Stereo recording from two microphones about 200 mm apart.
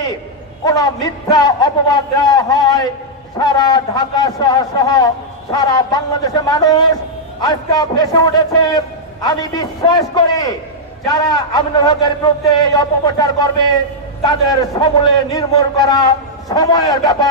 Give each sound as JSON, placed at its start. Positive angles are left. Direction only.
{"t": 0.7, "sound": "a man's voice", "side_deg": 20}